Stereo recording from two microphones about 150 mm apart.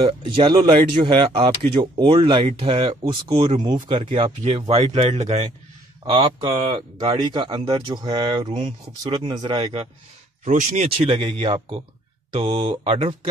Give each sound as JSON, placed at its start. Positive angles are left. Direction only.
{"t": 0.0, "sound": "speech", "side_deg": -35}
{"t": 6.0, "sound": "speech", "side_deg": -35}
{"t": 10.5, "sound": "speech", "side_deg": -55}
{"t": 11.1, "sound": "speech", "side_deg": -35}